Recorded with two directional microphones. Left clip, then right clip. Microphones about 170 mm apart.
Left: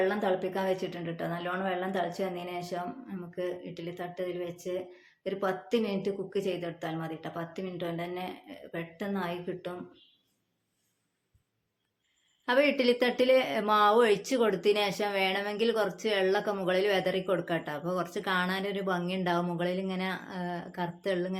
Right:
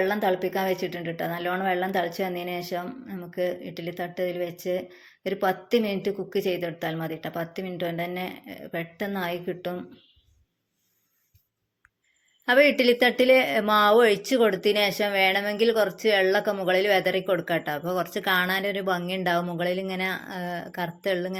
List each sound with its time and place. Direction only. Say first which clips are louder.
0.0 s a woman's voice: right 4 dB; 30° right (ahead or behind)
12.5 s a woman's voice: right 6 dB; 25° right (ahead or behind)